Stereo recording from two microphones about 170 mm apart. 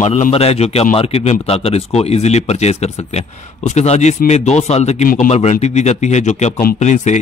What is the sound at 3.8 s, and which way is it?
A man's voice, 40° left (ahead or behind).